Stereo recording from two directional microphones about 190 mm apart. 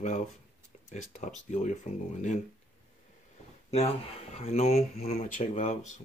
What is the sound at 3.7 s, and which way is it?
Speech, 35° left (ahead or behind).